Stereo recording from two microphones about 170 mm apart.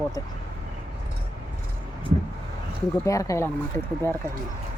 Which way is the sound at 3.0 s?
20° left (ahead or behind).